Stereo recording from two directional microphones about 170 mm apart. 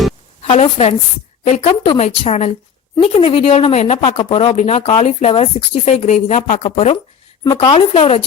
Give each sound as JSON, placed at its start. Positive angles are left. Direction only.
{"t": 0.4, "sound": "a woman's voice", "side_deg": 35}
{"t": 1.7, "sound": "speech", "side_deg": 30}